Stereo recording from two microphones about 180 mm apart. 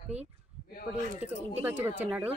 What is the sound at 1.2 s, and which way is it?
A woman's voice, 10° right (ahead or behind).